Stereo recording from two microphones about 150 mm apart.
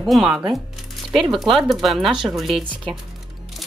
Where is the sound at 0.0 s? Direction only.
Centre (ahead or behind).